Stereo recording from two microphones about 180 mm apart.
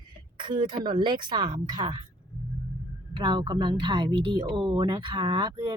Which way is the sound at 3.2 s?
25° right (ahead or behind).